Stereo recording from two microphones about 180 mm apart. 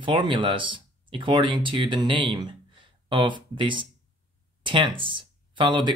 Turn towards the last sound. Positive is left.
turn(degrees=-25)  # may be behind; listen again after turning